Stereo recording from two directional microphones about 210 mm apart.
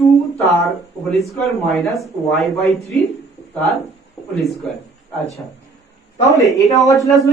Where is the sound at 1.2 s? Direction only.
Centre (ahead or behind).